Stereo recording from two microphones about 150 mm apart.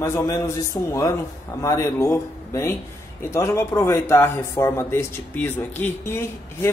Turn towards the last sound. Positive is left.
turn(degrees=15)  # may be behind; listen again after turning